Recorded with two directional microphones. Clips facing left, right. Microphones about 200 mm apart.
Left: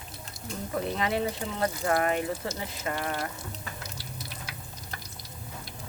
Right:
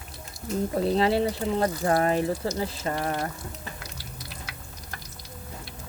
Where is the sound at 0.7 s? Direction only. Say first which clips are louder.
Right 5 dB; 30° right (ahead or behind).